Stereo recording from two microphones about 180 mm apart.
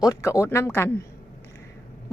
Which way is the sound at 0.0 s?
20° left (ahead or behind).